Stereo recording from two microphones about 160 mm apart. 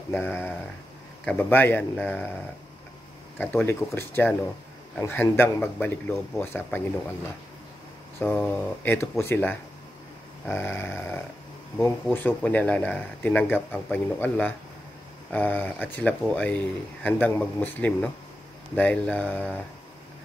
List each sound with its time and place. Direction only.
0.1 s speech: 15° left (ahead or behind)
3.3 s speech: 15° left (ahead or behind)
8.2 s speech: 10° left (ahead or behind)